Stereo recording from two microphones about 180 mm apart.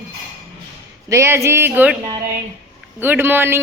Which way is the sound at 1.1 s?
15° right (ahead or behind).